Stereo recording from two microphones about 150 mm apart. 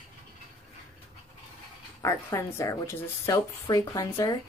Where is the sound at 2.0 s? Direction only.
20° left (ahead or behind).